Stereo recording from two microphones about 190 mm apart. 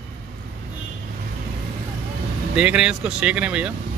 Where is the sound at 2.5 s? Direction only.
5° right (ahead or behind).